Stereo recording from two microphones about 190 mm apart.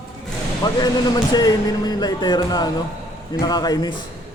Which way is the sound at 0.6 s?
20° left (ahead or behind).